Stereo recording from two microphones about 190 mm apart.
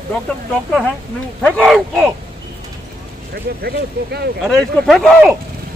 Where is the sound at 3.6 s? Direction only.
60° right (ahead or behind).